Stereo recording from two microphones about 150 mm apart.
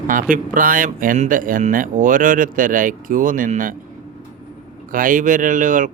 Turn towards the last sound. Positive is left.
turn(degrees=-60)  # may be behind; listen again after turning